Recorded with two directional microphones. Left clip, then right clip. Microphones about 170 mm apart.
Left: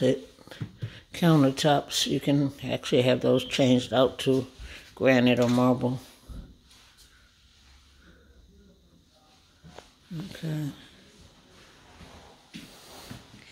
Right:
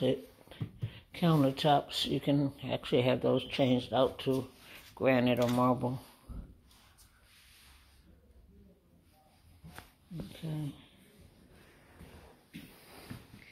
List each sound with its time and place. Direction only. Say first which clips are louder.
0.0 s speech: left 7 dB; 35° left (ahead or behind)
10.3 s speech: left 8 dB; 35° left (ahead or behind)